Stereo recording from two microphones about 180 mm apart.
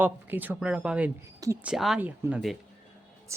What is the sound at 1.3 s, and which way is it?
Speech, 20° right (ahead or behind).